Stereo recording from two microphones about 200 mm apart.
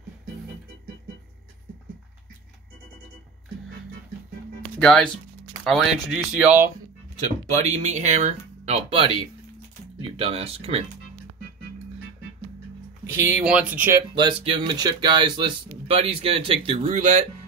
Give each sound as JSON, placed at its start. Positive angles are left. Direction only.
{"t": 4.7, "sound": "speech", "side_deg": 5}
{"t": 7.5, "sound": "speech", "side_deg": -35}
{"t": 10.1, "sound": "speech", "side_deg": -30}
{"t": 13.0, "sound": "speech", "side_deg": -10}
{"t": 14.1, "sound": "speech", "side_deg": -25}